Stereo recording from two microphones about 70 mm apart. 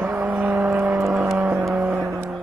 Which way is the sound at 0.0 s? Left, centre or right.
Right.